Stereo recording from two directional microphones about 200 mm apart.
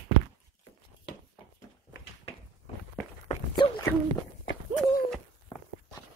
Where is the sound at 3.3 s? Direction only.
40° left (ahead or behind).